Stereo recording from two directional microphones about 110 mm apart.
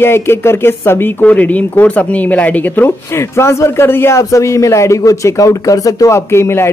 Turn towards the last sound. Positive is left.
turn(degrees=25)  # may be behind; listen again after turning